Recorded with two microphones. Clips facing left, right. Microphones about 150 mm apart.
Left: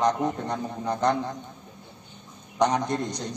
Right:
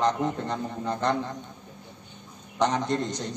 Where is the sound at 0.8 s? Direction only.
15° left (ahead or behind).